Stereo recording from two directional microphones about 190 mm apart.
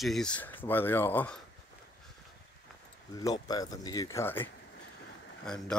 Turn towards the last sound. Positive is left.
turn(degrees=5)  # may be behind; listen again after turning